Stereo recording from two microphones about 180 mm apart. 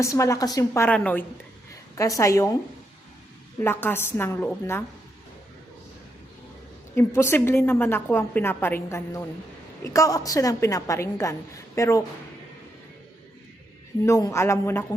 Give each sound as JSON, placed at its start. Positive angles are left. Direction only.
{"t": 0.0, "sound": "a woman's voice", "side_deg": 15}
{"t": 1.7, "sound": "a woman's voice", "side_deg": 20}
{"t": 3.6, "sound": "a woman's voice", "side_deg": 10}
{"t": 6.9, "sound": "a woman's voice", "side_deg": 15}
{"t": 14.0, "sound": "a woman's voice", "side_deg": 15}